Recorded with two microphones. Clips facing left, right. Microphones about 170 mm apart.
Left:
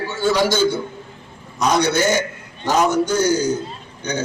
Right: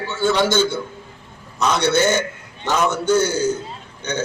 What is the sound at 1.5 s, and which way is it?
Speech, 25° right (ahead or behind).